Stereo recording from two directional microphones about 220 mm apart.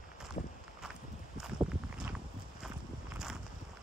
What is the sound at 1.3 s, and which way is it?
Walk, 5° right (ahead or behind).